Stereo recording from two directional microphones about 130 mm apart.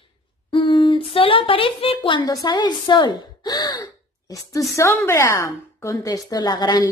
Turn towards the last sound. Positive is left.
turn(degrees=30)  # may be behind; listen again after turning